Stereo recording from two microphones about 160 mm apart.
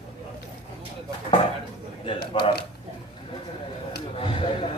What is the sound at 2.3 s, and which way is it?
Speech, 35° left (ahead or behind).